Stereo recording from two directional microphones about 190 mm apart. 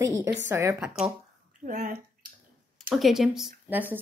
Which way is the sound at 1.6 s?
40° right (ahead or behind).